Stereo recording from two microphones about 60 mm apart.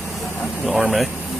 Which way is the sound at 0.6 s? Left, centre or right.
Centre.